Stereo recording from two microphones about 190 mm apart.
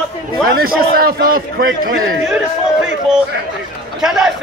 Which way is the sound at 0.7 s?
50° right (ahead or behind).